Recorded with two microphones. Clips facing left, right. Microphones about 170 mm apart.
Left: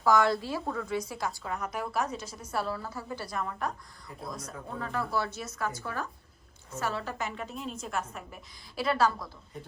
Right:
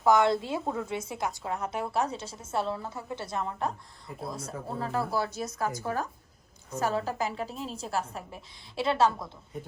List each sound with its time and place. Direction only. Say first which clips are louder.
0.0 s a woman's voice: right 2 dB; 20° right (ahead or behind)